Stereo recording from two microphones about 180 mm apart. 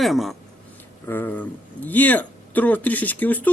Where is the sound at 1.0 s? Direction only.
10° left (ahead or behind).